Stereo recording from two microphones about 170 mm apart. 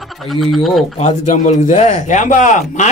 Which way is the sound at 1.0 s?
45° left (ahead or behind).